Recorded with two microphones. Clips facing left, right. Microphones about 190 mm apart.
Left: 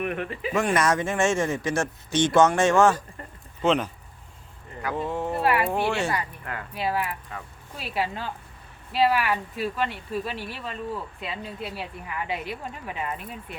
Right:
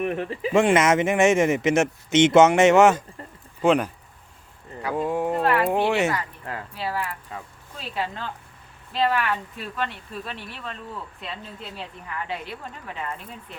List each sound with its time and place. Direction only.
0.0 s speech: 30° right (ahead or behind); by 3.9 s 10° right (ahead or behind)
4.9 s speech: 15° right (ahead or behind)
5.4 s speech: 10° left (ahead or behind)
5.6 s speech: 15° right (ahead or behind)
6.7 s speech: 15° left (ahead or behind)